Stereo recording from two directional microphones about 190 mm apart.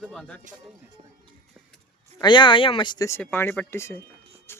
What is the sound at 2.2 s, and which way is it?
Speech, 25° left (ahead or behind).